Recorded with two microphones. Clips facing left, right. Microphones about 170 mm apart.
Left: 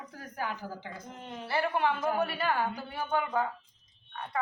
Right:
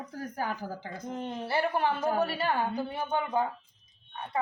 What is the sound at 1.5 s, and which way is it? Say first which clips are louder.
A woman's voice: even; 35° right (ahead or behind).